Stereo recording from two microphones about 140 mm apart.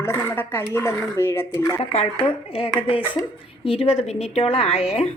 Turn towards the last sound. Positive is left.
turn(degrees=45)  # may be behind; listen again after turning